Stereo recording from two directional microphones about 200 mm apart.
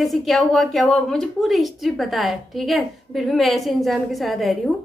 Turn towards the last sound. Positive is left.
turn(degrees=0)  # may be behind; listen again after turning